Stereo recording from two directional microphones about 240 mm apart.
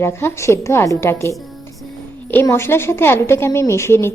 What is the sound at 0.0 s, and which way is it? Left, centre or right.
A woman's voice, centre.